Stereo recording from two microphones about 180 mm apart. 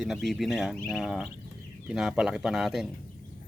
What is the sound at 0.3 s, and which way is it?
Speech, centre (ahead or behind).